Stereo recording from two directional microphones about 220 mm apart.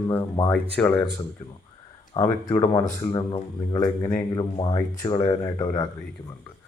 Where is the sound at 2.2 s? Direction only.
15° left (ahead or behind).